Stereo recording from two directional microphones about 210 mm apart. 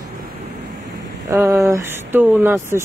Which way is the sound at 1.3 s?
15° right (ahead or behind).